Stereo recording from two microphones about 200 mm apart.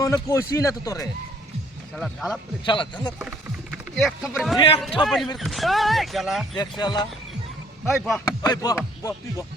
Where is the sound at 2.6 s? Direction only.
25° left (ahead or behind).